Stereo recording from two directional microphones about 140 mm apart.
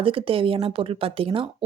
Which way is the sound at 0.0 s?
40° right (ahead or behind).